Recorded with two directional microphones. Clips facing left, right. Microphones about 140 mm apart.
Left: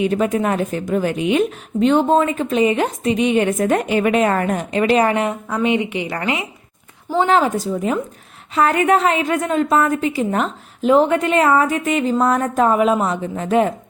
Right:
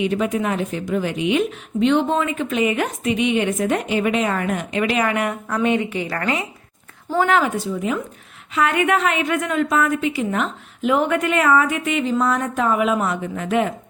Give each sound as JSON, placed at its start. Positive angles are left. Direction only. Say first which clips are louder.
{"t": 0.0, "sound": "a woman's voice", "louder": "left 3 dB", "side_deg": 45}
{"t": 5.9, "sound": "speech", "louder": "left 1 dB", "side_deg": 15}
{"t": 7.2, "sound": "a woman's voice", "louder": "left 2 dB", "side_deg": 30}